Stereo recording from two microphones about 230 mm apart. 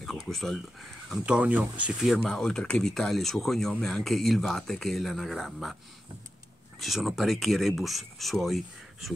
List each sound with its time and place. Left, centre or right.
0.0 s speech: centre
6.8 s speech: centre